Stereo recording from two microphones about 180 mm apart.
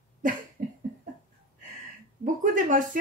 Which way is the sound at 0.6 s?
45° right (ahead or behind).